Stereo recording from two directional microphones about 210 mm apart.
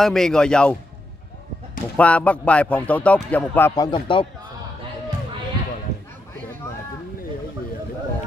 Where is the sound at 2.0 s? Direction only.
5° left (ahead or behind); by 4.2 s 25° left (ahead or behind).